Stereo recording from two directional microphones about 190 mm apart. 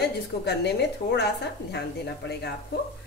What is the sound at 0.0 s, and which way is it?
A woman's voice, 60° left (ahead or behind).